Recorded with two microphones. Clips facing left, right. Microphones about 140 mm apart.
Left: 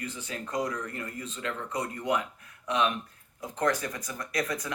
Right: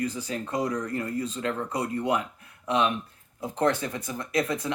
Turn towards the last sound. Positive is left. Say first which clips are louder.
# right 5 dB
turn(degrees=-25)  # may be behind; listen again after turning